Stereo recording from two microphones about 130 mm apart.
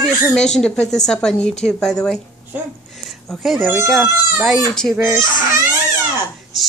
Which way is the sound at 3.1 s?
Centre (ahead or behind).